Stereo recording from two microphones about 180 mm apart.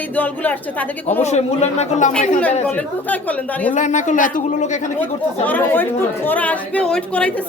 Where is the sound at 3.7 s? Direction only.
45° left (ahead or behind).